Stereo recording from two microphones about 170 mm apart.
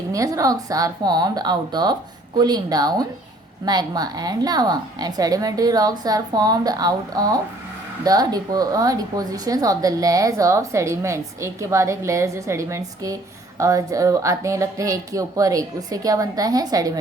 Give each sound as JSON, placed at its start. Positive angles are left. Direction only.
{"t": 0.1, "sound": "speech", "side_deg": -20}